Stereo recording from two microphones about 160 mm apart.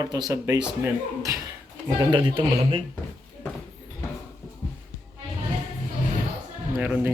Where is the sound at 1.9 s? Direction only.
30° right (ahead or behind).